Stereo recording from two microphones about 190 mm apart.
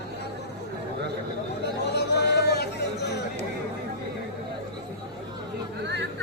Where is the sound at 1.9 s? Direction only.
60° left (ahead or behind).